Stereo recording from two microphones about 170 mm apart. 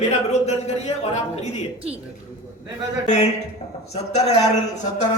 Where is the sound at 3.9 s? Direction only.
40° left (ahead or behind).